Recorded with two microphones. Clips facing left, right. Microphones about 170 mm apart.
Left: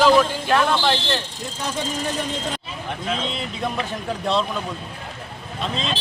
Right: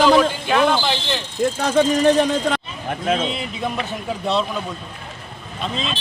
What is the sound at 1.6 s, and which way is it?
Speech, 75° right (ahead or behind).